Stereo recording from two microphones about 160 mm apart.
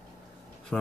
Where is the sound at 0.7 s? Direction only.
5° left (ahead or behind).